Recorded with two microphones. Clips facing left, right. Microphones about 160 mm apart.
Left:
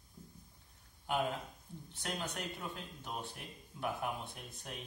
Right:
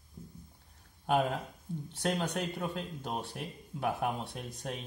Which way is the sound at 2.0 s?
70° right (ahead or behind).